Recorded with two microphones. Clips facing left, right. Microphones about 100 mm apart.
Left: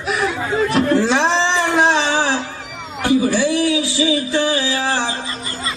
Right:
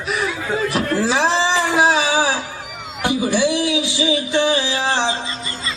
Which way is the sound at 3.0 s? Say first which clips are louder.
Left 2 dB; 20° right (ahead or behind).